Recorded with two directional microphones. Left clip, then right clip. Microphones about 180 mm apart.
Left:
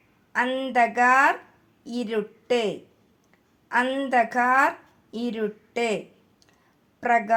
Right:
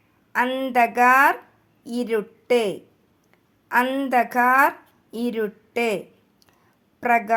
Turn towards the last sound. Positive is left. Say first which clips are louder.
# right 2 dB
turn(degrees=-30)  # may be behind; listen again after turning